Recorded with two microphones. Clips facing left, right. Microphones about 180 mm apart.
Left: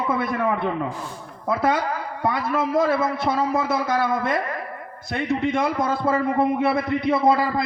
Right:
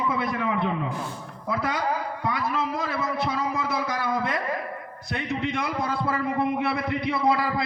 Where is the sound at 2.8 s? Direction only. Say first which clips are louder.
Left 7 dB; 60° left (ahead or behind).